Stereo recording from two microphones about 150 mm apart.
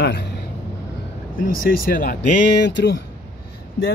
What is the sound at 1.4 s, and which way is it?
Speech, 65° left (ahead or behind).